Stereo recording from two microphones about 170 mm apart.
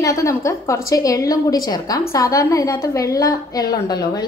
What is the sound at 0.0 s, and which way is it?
A woman's voice, 20° left (ahead or behind).